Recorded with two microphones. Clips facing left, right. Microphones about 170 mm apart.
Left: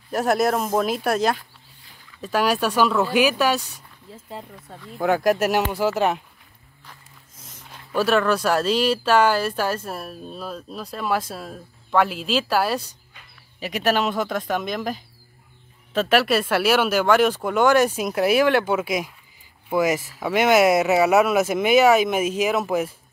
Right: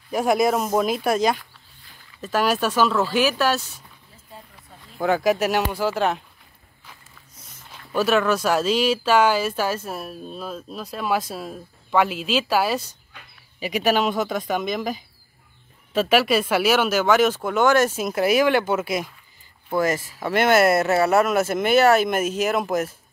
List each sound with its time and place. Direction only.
0.1 s speech: 5° left (ahead or behind)
2.4 s speech: 10° left (ahead or behind)
4.3 s speech: 90° left
5.0 s speech: centre (ahead or behind)
8.1 s speech: 5° right (ahead or behind)